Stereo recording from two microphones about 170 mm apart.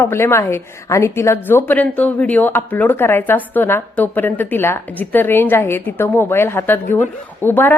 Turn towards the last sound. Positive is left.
turn(degrees=10)  # may be behind; listen again after turning